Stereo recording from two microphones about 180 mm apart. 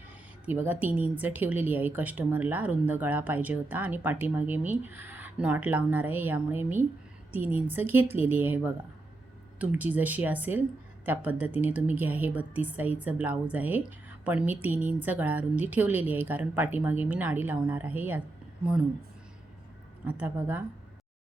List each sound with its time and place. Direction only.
0.4 s a woman's voice: 10° right (ahead or behind)
20.1 s a woman's voice: 10° right (ahead or behind)